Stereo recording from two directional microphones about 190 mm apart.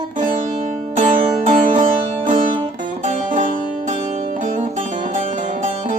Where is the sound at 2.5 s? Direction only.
25° right (ahead or behind).